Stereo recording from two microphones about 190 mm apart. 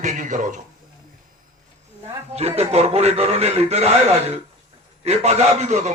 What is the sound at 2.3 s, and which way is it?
A man's voice, 35° right (ahead or behind).